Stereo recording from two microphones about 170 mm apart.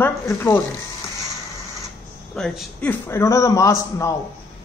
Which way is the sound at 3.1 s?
15° left (ahead or behind).